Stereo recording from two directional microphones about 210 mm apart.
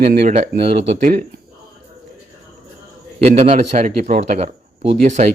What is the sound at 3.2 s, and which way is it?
Speech, 30° right (ahead or behind).